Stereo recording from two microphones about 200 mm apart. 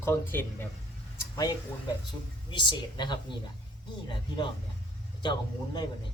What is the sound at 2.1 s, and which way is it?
A woman's voice, 20° left (ahead or behind).